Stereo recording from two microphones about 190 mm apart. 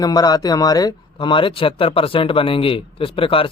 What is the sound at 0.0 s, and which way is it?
A man's voice, 20° left (ahead or behind).